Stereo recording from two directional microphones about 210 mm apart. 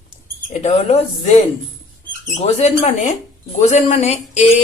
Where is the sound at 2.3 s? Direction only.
30° left (ahead or behind).